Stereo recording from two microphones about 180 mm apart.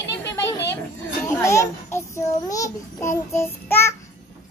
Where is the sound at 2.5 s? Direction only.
20° left (ahead or behind).